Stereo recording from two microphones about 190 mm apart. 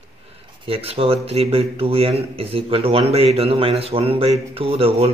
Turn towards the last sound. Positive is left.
turn(degrees=-30)  # may be behind; listen again after turning